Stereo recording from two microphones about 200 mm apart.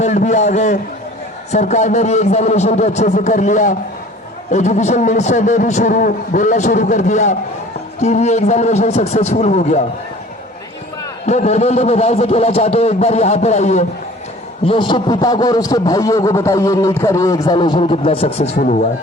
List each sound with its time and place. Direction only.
0.0 s a man's voice: 35° left (ahead or behind)
11.3 s a man's voice: 35° left (ahead or behind)
18.5 s a man's voice: 40° left (ahead or behind)